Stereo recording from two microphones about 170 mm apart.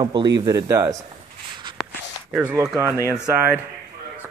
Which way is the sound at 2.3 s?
15° right (ahead or behind).